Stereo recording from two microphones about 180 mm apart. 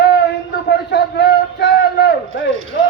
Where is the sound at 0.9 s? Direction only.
75° left (ahead or behind).